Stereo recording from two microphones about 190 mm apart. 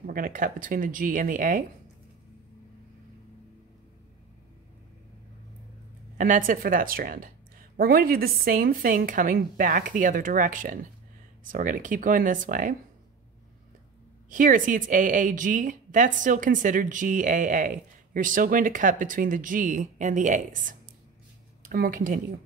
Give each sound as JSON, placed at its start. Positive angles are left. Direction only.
{"t": 0.0, "sound": "a woman's voice", "side_deg": -45}
{"t": 6.1, "sound": "a woman's voice", "side_deg": -45}
{"t": 14.3, "sound": "a woman's voice", "side_deg": -45}